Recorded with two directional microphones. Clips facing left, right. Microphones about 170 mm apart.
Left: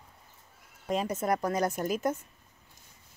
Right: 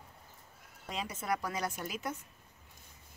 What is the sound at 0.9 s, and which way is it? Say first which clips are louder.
Speech: left 8 dB; 45° left (ahead or behind).